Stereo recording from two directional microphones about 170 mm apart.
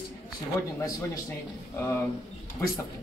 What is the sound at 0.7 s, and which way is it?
A man's voice, 20° left (ahead or behind).